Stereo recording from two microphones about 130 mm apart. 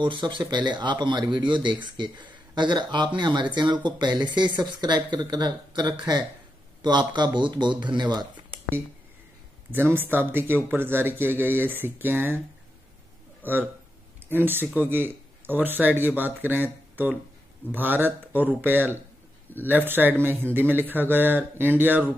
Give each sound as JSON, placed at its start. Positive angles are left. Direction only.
{"t": 0.0, "sound": "speech", "side_deg": -35}
{"t": 9.7, "sound": "speech", "side_deg": -15}
{"t": 13.4, "sound": "speech", "side_deg": -15}